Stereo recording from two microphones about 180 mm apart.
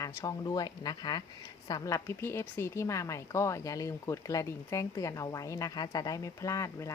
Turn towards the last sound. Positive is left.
turn(degrees=15)  # may be behind; listen again after turning